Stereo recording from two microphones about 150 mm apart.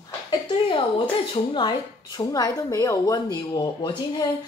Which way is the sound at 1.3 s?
30° left (ahead or behind).